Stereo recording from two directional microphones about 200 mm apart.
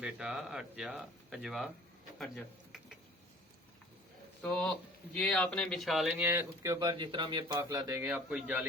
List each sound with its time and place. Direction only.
0.0 s speech: 5° right (ahead or behind)
2.1 s a sound: centre (ahead or behind)
4.4 s speech: 5° left (ahead or behind)
6.2 s speech: 15° right (ahead or behind)